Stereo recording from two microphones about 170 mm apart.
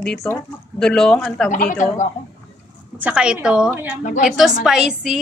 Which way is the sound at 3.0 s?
5° right (ahead or behind).